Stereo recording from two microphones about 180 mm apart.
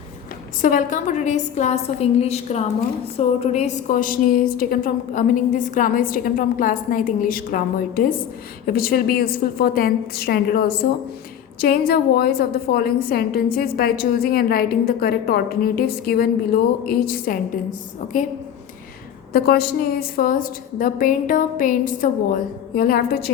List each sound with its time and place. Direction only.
0.6 s a woman's voice: 45° left (ahead or behind)
19.3 s a woman's voice: 60° left (ahead or behind)